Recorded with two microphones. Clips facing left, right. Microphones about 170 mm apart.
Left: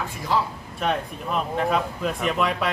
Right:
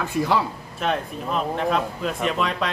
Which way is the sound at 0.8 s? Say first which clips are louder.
Right 1 dB; centre (ahead or behind).